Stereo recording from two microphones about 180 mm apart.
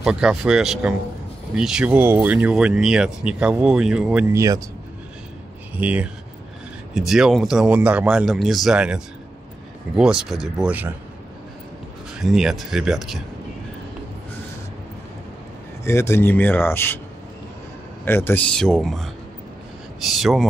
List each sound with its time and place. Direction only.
0.0 s speech: 5° right (ahead or behind)
4.4 s speech: 20° right (ahead or behind)
5.8 s speech: 10° right (ahead or behind)
12.2 s speech: centre (ahead or behind)
15.8 s speech: 15° left (ahead or behind)
18.0 s speech: 10° left (ahead or behind)
20.1 s speech: centre (ahead or behind)